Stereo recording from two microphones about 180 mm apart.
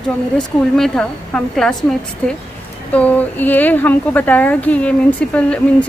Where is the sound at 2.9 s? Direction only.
10° left (ahead or behind).